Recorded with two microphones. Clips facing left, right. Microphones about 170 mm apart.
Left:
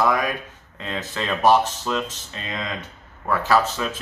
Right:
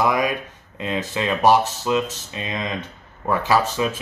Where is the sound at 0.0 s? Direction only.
15° right (ahead or behind).